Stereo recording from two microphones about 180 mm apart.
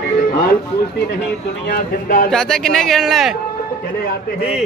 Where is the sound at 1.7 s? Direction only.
55° left (ahead or behind).